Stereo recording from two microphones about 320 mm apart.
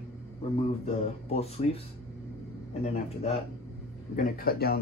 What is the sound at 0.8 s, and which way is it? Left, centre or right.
Speech, centre.